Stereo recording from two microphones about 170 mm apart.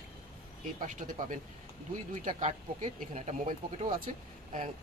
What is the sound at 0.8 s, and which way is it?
Speech, 50° right (ahead or behind).